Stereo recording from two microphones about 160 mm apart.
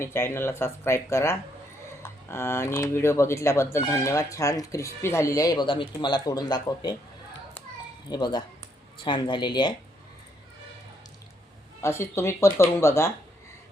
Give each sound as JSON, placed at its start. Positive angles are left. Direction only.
{"t": 0.0, "sound": "speech", "side_deg": 15}
{"t": 8.1, "sound": "speech", "side_deg": 25}
{"t": 11.8, "sound": "speech", "side_deg": 15}